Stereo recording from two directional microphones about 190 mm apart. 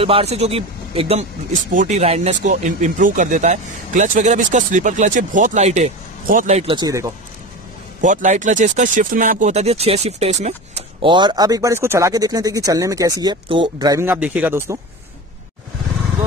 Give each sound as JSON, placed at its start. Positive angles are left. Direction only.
{"t": 0.0, "sound": "speech", "side_deg": -30}
{"t": 8.0, "sound": "speech", "side_deg": -40}